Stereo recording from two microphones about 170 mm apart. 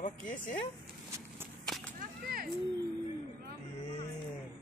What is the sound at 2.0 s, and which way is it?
Whip, 60° right (ahead or behind).